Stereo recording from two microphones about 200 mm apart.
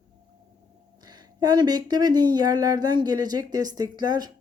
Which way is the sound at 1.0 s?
20° right (ahead or behind).